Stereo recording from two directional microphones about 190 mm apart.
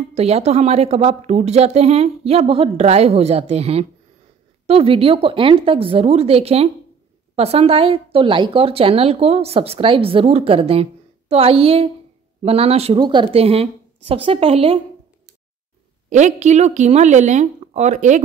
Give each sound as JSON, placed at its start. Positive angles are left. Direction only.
{"t": 0.1, "sound": "speech", "side_deg": -35}
{"t": 16.1, "sound": "speech", "side_deg": -40}